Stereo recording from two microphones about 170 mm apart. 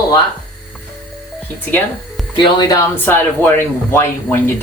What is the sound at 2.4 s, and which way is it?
Speech, 25° left (ahead or behind).